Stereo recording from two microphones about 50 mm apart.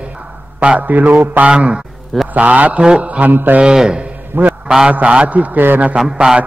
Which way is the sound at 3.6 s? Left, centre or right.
Centre.